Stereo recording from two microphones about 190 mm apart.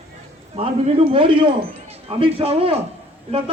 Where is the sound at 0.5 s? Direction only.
35° right (ahead or behind).